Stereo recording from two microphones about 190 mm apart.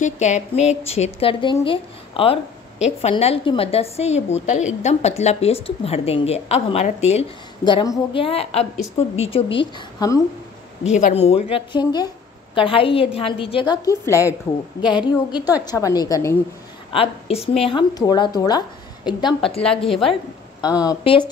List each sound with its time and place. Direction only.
0.0 s a woman's voice: 40° left (ahead or behind); by 10.2 s 20° left (ahead or behind)
10.8 s a woman's voice: 40° left (ahead or behind)
15.0 s speech: 20° left (ahead or behind)
16.9 s speech: 30° left (ahead or behind)
19.9 s a woman's voice: centre (ahead or behind)
20.8 s speech: 25° left (ahead or behind)